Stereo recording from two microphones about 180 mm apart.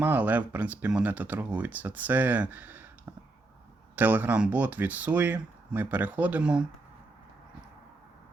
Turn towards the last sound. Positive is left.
turn(degrees=-5)  # may be behind; listen again after turning